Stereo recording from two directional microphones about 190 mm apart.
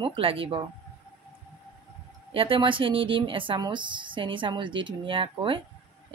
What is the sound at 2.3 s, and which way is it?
Speech, 25° right (ahead or behind).